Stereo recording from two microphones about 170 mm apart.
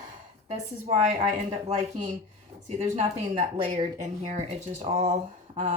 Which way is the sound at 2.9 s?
40° right (ahead or behind).